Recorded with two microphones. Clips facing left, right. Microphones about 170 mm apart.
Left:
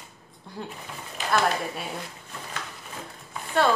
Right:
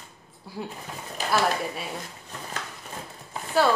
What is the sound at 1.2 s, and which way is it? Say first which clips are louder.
Speech: even; 35° right (ahead or behind).